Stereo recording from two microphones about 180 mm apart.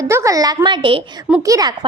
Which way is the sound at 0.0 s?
15° right (ahead or behind).